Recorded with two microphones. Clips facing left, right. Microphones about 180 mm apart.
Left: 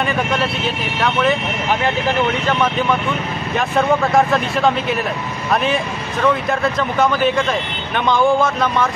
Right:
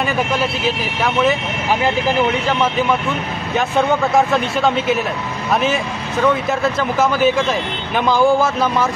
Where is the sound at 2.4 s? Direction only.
5° right (ahead or behind).